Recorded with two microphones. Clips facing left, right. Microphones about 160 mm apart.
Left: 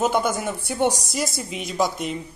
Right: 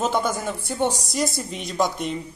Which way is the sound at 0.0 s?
10° left (ahead or behind).